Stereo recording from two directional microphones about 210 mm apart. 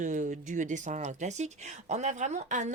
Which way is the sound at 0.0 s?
35° right (ahead or behind).